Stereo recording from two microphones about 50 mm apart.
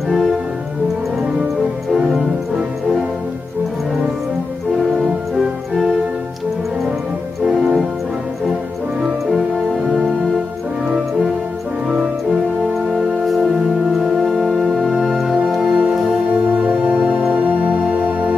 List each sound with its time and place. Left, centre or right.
1.9 s music: centre
4.7 s organ: centre
5.4 s music: centre
7.4 s music: centre
12.9 s music: centre
16.7 s music: centre